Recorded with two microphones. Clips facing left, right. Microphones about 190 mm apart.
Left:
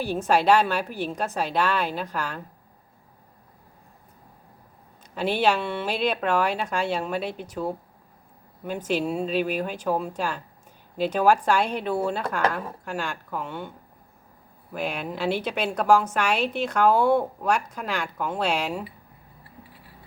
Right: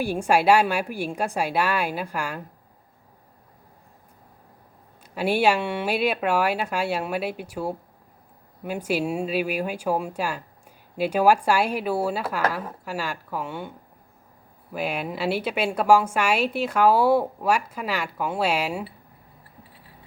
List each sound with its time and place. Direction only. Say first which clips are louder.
0.0 s a woman's voice: right 1 dB; 10° right (ahead or behind)
5.1 s a woman's voice: right 2 dB; 10° right (ahead or behind)
14.7 s a woman's voice: right 2 dB; 5° right (ahead or behind)